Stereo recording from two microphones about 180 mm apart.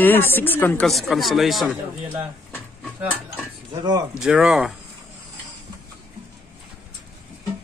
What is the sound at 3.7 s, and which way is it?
Speech, 25° right (ahead or behind).